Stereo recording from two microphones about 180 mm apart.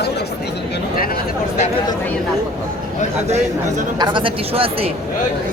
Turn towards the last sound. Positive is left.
turn(degrees=-30)  # may be behind; listen again after turning